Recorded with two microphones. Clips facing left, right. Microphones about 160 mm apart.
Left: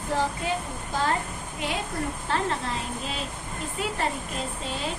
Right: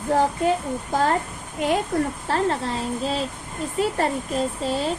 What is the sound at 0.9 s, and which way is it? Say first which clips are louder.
Speech: right 5 dB; 45° right (ahead or behind).